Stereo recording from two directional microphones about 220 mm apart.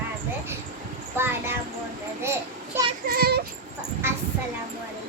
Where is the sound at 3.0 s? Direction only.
45° right (ahead or behind).